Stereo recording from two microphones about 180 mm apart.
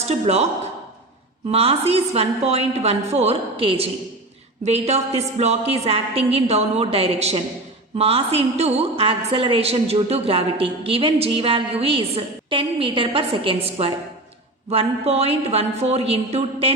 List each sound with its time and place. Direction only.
0.0 s speech: 35° right (ahead or behind)
1.5 s a woman's voice: 35° right (ahead or behind)